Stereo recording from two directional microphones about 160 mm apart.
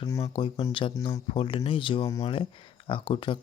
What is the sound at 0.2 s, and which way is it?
Speech, 35° left (ahead or behind).